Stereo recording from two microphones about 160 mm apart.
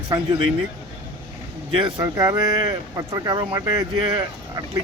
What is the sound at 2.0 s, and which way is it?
Speech, 25° right (ahead or behind).